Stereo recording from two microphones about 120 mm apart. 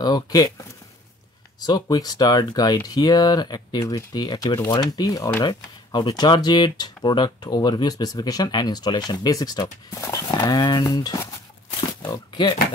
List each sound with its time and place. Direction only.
0.0 s speech: 35° left (ahead or behind)
1.6 s speech: 35° left (ahead or behind)